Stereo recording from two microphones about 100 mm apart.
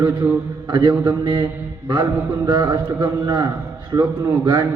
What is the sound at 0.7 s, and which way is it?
Mantra, 50° right (ahead or behind).